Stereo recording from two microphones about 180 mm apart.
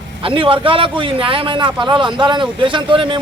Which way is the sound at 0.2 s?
30° right (ahead or behind).